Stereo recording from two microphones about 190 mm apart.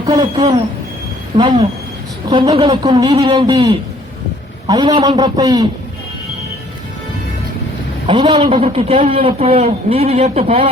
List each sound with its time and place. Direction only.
0.0 s speech: 20° right (ahead or behind)
1.4 s a man's voice: 25° right (ahead or behind)
8.0 s a man's voice: 30° right (ahead or behind)